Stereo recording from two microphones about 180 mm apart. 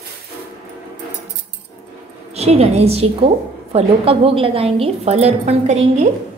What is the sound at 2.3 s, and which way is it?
A woman's voice, 35° right (ahead or behind).